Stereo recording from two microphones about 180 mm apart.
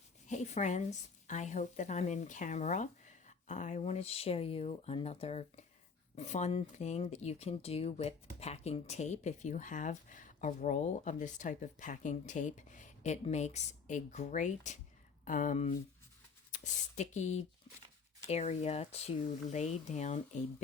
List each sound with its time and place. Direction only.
0.3 s speech: 40° left (ahead or behind)